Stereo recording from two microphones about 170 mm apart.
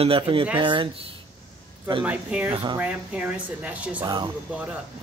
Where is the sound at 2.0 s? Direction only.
10° right (ahead or behind).